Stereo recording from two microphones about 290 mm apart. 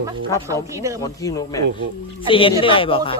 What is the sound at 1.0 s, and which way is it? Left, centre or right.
A man's voice, centre.